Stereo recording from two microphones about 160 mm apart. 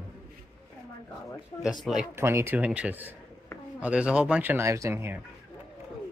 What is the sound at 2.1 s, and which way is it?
Speech, 15° right (ahead or behind).